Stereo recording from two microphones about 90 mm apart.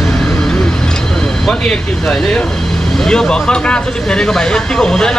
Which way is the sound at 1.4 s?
5° left (ahead or behind).